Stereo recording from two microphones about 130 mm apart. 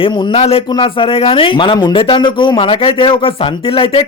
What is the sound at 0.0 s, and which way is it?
Speech, 45° left (ahead or behind).